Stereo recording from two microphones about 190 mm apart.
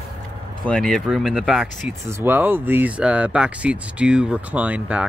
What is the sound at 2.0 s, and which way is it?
Speech, 15° right (ahead or behind).